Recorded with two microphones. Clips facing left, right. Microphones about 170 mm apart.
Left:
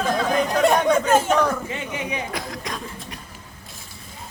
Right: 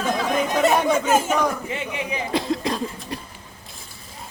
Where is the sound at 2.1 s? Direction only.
25° right (ahead or behind).